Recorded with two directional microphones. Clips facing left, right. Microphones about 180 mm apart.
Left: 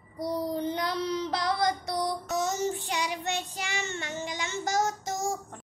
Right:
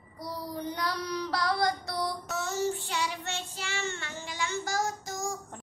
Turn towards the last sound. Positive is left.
turn(degrees=20)  # may be behind; listen again after turning